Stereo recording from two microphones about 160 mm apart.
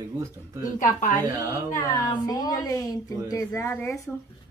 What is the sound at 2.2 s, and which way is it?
A woman's voice, 25° left (ahead or behind).